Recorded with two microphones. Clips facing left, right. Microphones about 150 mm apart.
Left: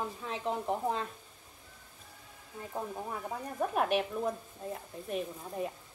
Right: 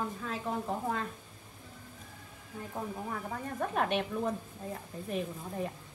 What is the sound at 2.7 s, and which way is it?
Speech, 10° left (ahead or behind).